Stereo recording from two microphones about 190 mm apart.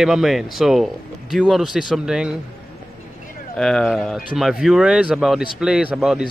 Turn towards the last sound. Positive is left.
turn(degrees=-5)  # may be behind; listen again after turning